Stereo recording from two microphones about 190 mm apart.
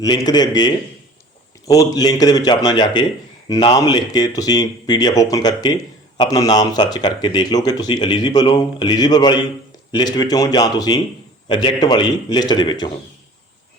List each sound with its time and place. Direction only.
0.0 s speech: 20° left (ahead or behind)